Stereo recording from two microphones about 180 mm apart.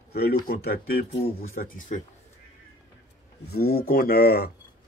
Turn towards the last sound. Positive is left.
turn(degrees=60)  # may be behind; listen again after turning